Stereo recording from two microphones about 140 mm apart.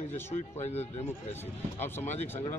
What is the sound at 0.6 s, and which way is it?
Speech, 50° left (ahead or behind).